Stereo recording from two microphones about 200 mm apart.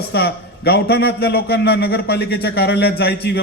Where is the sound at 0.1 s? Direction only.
55° left (ahead or behind).